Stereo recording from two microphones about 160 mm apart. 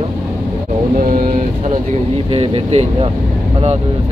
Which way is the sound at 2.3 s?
35° right (ahead or behind).